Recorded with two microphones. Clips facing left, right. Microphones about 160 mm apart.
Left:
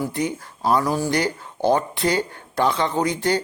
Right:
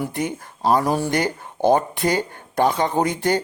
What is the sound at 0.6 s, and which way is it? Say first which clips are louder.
Speech: right 1 dB; 30° right (ahead or behind).